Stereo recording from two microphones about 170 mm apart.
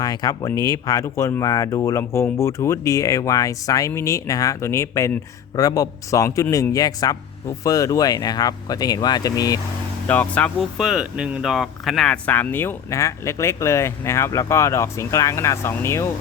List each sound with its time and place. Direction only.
0.0 s speech: 25° left (ahead or behind)
10.1 s speech: 10° left (ahead or behind)
10.8 s speech: 5° right (ahead or behind); by 16.0 s 15° left (ahead or behind)